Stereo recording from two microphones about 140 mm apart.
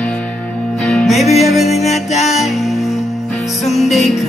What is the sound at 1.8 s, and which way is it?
Music, 55° left (ahead or behind).